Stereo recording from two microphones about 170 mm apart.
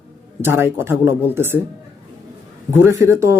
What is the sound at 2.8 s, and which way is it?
Speech, 15° right (ahead or behind).